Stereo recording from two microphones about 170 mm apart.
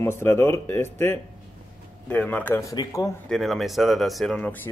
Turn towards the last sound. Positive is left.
turn(degrees=10)  # may be behind; listen again after turning